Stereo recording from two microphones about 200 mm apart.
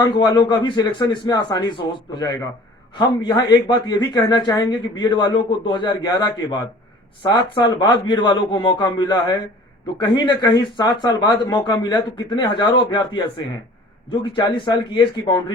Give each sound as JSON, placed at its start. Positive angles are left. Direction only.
{"t": 0.0, "sound": "speech", "side_deg": 20}